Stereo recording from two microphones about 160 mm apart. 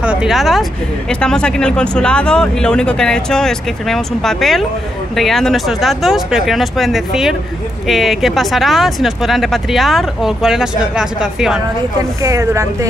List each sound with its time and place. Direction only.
0.0 s speech: 5° right (ahead or behind)
12.2 s speech: 20° right (ahead or behind)